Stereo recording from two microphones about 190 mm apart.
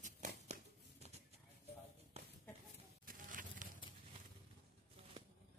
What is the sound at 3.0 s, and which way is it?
Insect, 45° right (ahead or behind).